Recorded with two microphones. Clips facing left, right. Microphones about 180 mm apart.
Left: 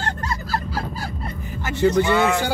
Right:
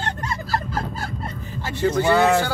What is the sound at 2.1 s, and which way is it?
Speech, 35° right (ahead or behind).